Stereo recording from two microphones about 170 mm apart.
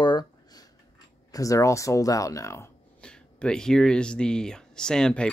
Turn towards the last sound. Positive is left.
turn(degrees=5)  # may be behind; listen again after turning